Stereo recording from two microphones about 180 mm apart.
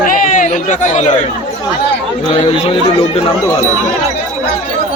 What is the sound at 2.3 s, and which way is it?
Speech, 35° left (ahead or behind).